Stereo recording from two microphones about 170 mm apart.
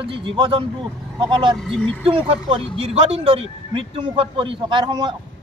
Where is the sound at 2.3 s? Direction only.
35° right (ahead or behind).